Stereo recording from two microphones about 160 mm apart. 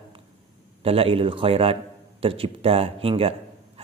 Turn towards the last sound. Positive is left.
turn(degrees=-35)  # may be behind; listen again after turning